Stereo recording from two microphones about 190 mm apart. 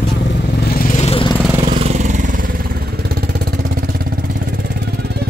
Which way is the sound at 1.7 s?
35° right (ahead or behind).